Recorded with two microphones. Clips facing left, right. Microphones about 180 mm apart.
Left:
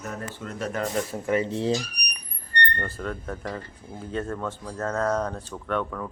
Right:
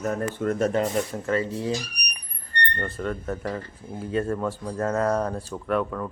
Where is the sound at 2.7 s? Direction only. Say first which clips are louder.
Right 3 dB; centre (ahead or behind).